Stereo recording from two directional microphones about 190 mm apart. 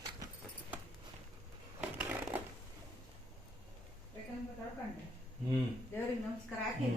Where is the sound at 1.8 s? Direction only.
10° right (ahead or behind).